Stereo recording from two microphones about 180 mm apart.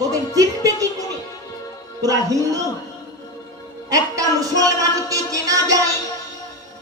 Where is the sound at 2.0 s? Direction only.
20° right (ahead or behind).